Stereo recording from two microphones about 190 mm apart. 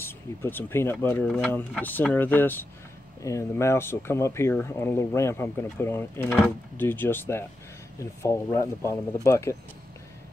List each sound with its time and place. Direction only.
0.0 s speech: 10° left (ahead or behind)